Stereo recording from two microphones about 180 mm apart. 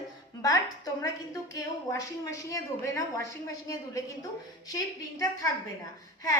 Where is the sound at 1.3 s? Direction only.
20° left (ahead or behind).